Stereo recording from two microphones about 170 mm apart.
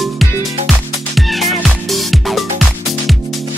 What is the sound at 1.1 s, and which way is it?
Music, centre (ahead or behind).